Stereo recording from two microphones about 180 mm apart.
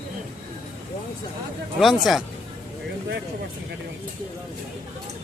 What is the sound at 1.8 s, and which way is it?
Speech, centre (ahead or behind).